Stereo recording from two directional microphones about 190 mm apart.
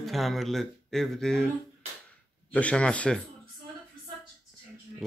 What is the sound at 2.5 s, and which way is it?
Speech, 5° left (ahead or behind).